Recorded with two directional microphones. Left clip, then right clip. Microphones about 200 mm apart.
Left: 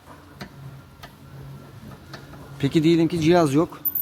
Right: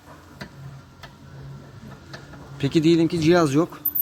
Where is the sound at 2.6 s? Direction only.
20° left (ahead or behind).